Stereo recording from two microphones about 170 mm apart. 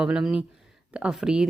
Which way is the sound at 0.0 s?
5° right (ahead or behind).